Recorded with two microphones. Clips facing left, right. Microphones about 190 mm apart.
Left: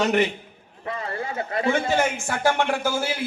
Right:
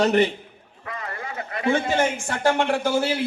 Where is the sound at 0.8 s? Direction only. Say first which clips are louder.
Left 4 dB; 30° left (ahead or behind).